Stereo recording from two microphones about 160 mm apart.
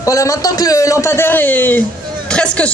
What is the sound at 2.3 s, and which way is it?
Hubbub, 5° left (ahead or behind).